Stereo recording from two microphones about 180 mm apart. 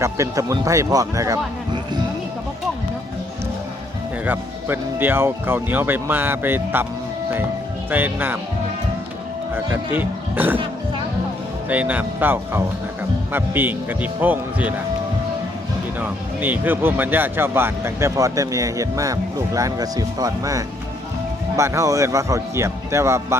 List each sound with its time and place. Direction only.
0.0 s a man's voice: 15° right (ahead or behind)
4.3 s speech: 10° right (ahead or behind)
7.9 s speech: 10° right (ahead or behind)
9.9 s speech: 10° right (ahead or behind)
11.7 s speech: 10° right (ahead or behind)
16.0 s speech: 10° right (ahead or behind)